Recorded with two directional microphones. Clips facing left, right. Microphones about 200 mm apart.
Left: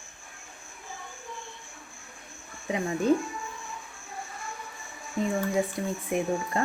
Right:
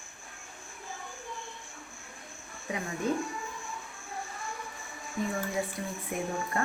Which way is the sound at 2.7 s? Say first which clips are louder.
Left 5 dB; 25° left (ahead or behind).